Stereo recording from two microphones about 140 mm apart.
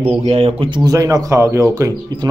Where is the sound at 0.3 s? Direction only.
40° right (ahead or behind).